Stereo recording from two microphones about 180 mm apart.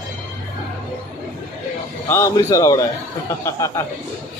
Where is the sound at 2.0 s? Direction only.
15° left (ahead or behind).